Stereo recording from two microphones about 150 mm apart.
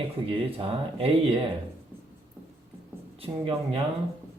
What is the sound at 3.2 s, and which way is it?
Speech, 40° right (ahead or behind).